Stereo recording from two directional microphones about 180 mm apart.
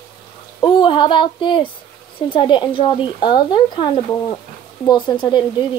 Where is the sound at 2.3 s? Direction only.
25° left (ahead or behind).